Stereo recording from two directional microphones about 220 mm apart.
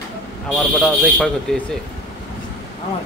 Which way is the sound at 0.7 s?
5° left (ahead or behind).